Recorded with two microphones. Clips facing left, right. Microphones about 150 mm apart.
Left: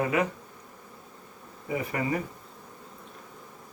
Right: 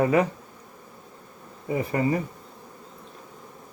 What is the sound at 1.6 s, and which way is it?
Speech, 35° right (ahead or behind).